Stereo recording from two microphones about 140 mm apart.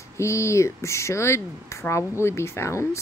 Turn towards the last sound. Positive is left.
turn(degrees=20)  # may be behind; listen again after turning